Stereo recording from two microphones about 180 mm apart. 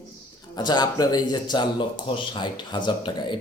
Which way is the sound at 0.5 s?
25° left (ahead or behind).